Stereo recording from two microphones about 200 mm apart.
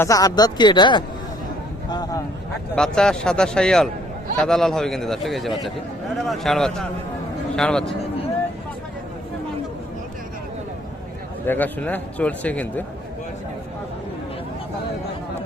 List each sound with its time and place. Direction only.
0.0 s speech: 15° left (ahead or behind)
2.7 s a man's voice: 5° left (ahead or behind)
11.4 s speech: 10° left (ahead or behind)